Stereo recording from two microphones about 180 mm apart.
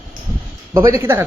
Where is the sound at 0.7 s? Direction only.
15° right (ahead or behind).